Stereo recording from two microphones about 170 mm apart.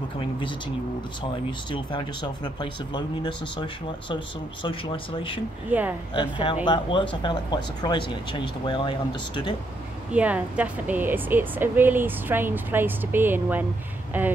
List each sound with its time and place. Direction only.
1.7 s speech: 30° left (ahead or behind)
5.7 s a woman's voice: 10° right (ahead or behind)
6.4 s speech: 30° left (ahead or behind)
10.1 s a woman's voice: 10° right (ahead or behind)